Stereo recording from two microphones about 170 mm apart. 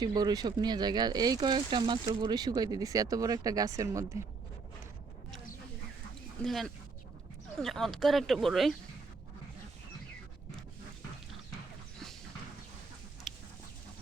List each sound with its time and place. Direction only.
0.0 s speech: 25° right (ahead or behind)
6.4 s speech: centre (ahead or behind)
13.3 s a sound: centre (ahead or behind)